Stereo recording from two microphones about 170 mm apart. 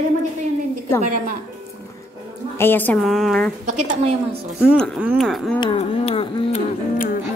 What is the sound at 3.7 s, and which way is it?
Speech, 45° right (ahead or behind).